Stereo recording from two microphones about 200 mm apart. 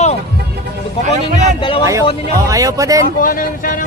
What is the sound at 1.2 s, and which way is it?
Speech, 35° right (ahead or behind).